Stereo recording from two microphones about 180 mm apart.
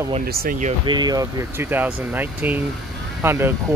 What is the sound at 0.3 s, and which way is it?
Speech, 55° right (ahead or behind).